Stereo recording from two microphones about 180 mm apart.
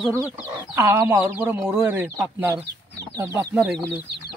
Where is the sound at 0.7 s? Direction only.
15° right (ahead or behind).